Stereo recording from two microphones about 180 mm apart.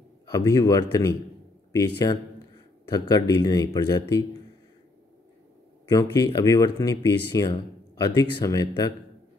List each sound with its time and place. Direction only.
0.3 s speech: 20° left (ahead or behind)
5.9 s speech: 20° left (ahead or behind)